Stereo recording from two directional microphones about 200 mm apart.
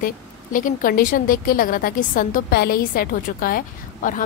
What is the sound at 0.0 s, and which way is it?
A woman's voice, 40° left (ahead or behind).